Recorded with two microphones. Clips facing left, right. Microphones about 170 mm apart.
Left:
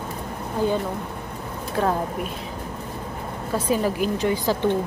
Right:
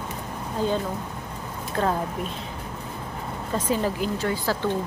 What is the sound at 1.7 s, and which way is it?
Speech, 10° left (ahead or behind).